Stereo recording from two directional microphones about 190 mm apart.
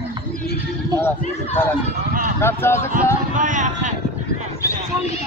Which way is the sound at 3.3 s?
40° right (ahead or behind).